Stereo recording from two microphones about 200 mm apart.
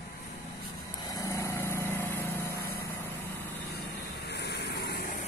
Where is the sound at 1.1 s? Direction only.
15° left (ahead or behind).